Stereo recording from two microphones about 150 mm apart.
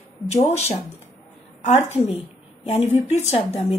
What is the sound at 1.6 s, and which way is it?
Speech, 45° left (ahead or behind).